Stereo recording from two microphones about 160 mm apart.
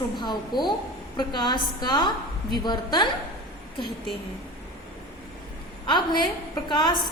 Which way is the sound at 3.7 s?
Centre (ahead or behind).